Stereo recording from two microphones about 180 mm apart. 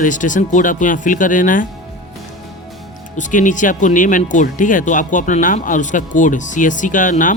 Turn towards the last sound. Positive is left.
turn(degrees=45)  # may be behind; listen again after turning